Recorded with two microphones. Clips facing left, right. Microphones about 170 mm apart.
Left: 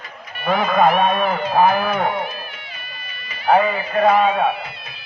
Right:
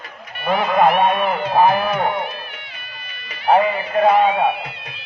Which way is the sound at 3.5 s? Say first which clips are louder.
Right 1 dB; 20° right (ahead or behind).